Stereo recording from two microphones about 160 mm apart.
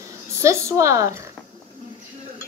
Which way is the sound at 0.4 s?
15° right (ahead or behind).